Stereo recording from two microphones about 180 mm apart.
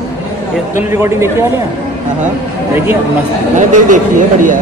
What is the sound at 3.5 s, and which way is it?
A man's voice, 45° right (ahead or behind).